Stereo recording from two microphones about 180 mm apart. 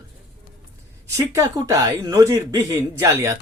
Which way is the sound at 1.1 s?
15° right (ahead or behind).